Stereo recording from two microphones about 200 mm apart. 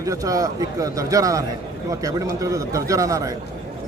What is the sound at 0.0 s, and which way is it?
A man's voice, 15° right (ahead or behind).